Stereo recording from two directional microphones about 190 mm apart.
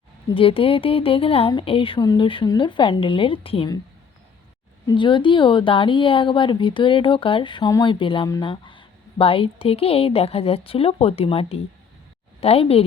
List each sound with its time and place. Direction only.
0.3 s a woman's voice: 30° left (ahead or behind)
4.9 s a woman's voice: 25° left (ahead or behind)